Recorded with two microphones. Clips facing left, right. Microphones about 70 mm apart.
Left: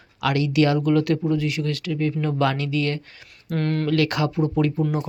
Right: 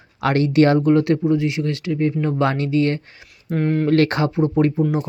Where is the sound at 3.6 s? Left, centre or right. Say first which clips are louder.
Right 4 dB; centre.